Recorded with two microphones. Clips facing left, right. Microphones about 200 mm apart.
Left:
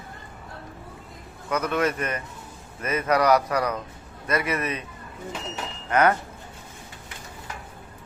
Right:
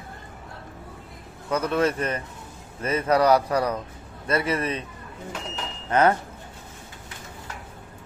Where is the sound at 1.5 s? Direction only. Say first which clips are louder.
Right 2 dB; 30° right (ahead or behind).